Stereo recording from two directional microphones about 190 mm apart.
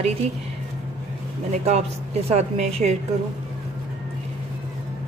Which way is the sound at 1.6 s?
35° right (ahead or behind).